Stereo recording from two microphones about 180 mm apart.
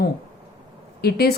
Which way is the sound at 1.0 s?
60° left (ahead or behind).